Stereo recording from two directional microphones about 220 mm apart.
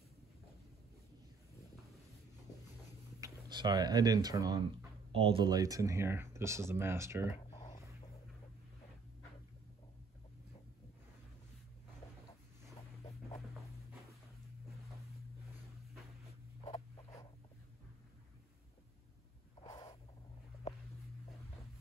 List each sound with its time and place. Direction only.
3.2 s speech: 20° right (ahead or behind)
7.5 s whispering: 20° left (ahead or behind)
16.6 s a sound: 30° left (ahead or behind)
19.7 s snort: 15° left (ahead or behind)